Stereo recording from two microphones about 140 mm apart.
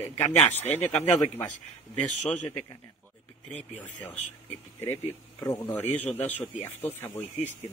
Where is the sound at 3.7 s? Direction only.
10° left (ahead or behind).